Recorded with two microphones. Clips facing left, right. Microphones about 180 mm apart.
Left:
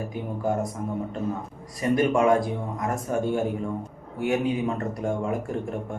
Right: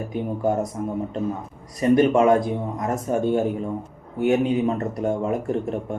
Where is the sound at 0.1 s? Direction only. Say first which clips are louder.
Right 6 dB; 20° right (ahead or behind).